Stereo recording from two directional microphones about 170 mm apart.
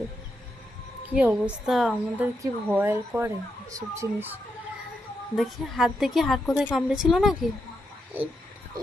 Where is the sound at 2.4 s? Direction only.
15° right (ahead or behind).